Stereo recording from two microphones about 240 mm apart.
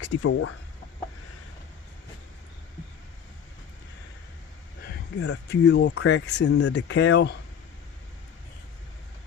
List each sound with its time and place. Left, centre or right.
0.2 s speech: left
4.8 s a sound: left
5.5 s speech: left